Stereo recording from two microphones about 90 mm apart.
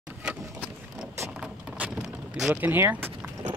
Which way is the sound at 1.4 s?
10° right (ahead or behind).